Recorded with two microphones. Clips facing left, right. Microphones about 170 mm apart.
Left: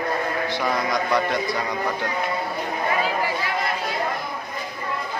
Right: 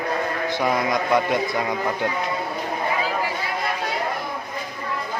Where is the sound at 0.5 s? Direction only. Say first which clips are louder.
Right 4 dB; 20° right (ahead or behind).